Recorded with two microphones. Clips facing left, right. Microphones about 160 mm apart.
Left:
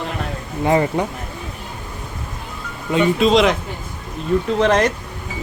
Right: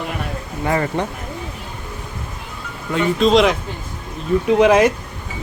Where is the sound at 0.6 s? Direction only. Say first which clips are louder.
Left 4 dB; 20° left (ahead or behind).